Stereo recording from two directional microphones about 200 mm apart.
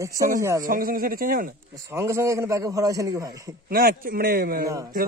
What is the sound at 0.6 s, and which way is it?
Speech, 45° right (ahead or behind).